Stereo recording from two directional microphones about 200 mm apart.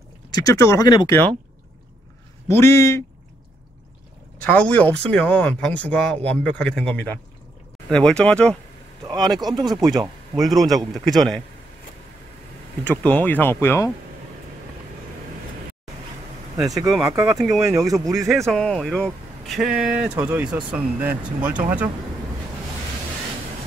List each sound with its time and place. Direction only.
0.3 s speech: 15° left (ahead or behind)
2.4 s speech: 15° left (ahead or behind)
4.5 s speech: 5° left (ahead or behind)
9.0 s speech: 20° right (ahead or behind)
9.8 s speech: centre (ahead or behind)
12.8 s speech: 10° left (ahead or behind)
16.8 s speech: centre (ahead or behind)